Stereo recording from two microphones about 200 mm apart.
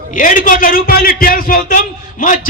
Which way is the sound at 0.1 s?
40° left (ahead or behind).